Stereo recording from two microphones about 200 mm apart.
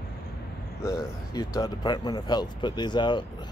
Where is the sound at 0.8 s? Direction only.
15° left (ahead or behind).